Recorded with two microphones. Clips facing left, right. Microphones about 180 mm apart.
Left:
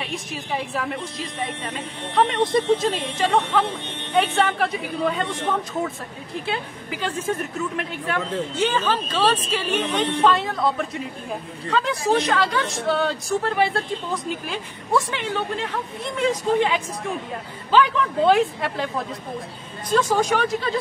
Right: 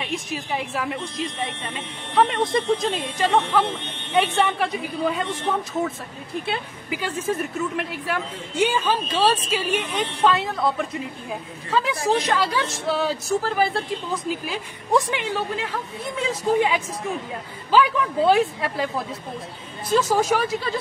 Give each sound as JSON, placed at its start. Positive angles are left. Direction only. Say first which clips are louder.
{"t": 0.0, "sound": "a woman's voice", "louder": "right 2 dB", "side_deg": 0}
{"t": 6.4, "sound": "a woman's voice", "louder": "left 1 dB", "side_deg": -5}
{"t": 14.9, "sound": "a woman's voice", "louder": "right 2 dB", "side_deg": -15}
{"t": 15.3, "sound": "a woman's voice", "louder": "left 1 dB", "side_deg": -5}